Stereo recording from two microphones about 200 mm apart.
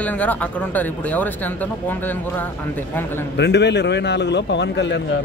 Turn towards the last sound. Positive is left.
turn(degrees=60)  # may be behind; listen again after turning